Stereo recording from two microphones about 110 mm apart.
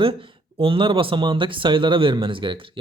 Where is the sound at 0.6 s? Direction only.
55° right (ahead or behind).